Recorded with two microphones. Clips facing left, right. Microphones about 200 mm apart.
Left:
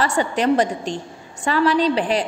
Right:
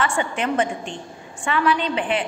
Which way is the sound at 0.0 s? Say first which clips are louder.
Left 4 dB; 35° left (ahead or behind).